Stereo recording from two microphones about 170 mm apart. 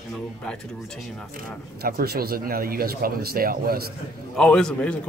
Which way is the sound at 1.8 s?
65° right (ahead or behind).